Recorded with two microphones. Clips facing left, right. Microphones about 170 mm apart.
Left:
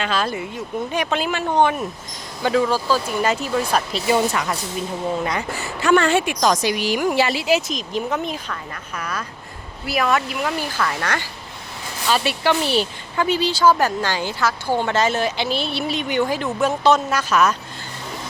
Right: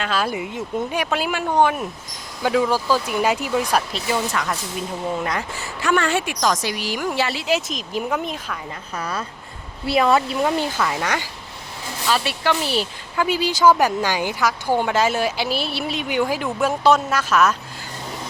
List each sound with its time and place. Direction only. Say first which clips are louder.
0.0 s speech: even; 5° right (ahead or behind)
0.9 s speech: left 4 dB; 5° right (ahead or behind)
3.7 s speech: even; centre (ahead or behind)
5.2 s speech: left 1 dB; centre (ahead or behind)
5.8 s speech: left 4 dB; 30° left (ahead or behind); by 8.5 s 5° right (ahead or behind)
9.0 s a woman's voice: right 1 dB; 30° right (ahead or behind)
12.0 s speech: left 2 dB; centre (ahead or behind)